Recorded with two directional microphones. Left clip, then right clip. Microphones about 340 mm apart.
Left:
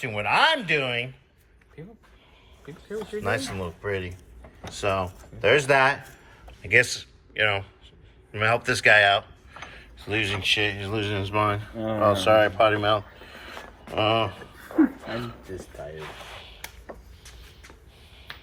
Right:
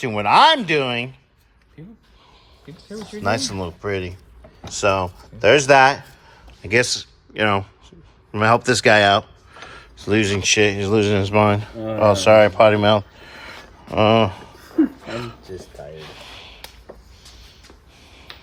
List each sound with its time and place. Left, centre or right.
0.0 s speech: centre
3.1 s speech: centre
10.0 s speech: centre